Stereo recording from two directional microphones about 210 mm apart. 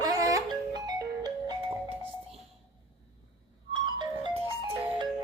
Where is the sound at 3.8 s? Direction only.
25° right (ahead or behind).